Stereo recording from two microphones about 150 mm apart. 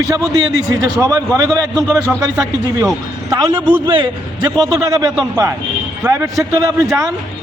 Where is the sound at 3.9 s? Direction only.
30° right (ahead or behind).